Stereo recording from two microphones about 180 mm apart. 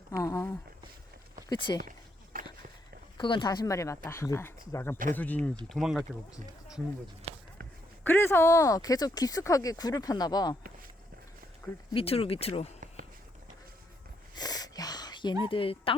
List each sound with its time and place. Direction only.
0.2 s a sound: 20° left (ahead or behind)
1.5 s speech: 25° left (ahead or behind)
2.3 s walk: 50° right (ahead or behind)
3.2 s speech: 25° left (ahead or behind); by 6.1 s centre (ahead or behind)
8.0 s speech: 15° left (ahead or behind)
11.9 s speech: 30° left (ahead or behind)
14.3 s a sound: 20° left (ahead or behind)
15.4 s speech: 30° left (ahead or behind)